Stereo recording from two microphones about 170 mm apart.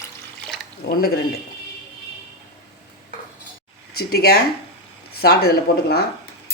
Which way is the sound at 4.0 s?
70° left (ahead or behind).